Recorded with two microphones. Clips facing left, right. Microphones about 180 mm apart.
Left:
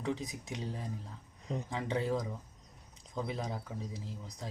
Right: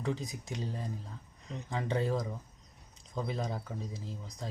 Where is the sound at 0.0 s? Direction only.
Centre (ahead or behind).